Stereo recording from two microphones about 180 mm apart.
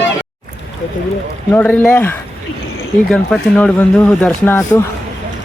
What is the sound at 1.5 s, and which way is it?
Speech, 10° left (ahead or behind).